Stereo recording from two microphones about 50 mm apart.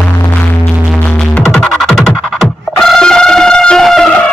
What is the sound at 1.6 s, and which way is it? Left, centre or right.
Music, centre.